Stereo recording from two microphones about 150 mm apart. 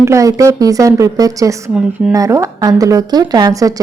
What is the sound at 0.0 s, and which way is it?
Speech, 20° right (ahead or behind).